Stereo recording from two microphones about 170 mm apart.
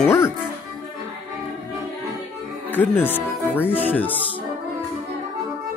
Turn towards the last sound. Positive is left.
turn(degrees=10)  # may be behind; listen again after turning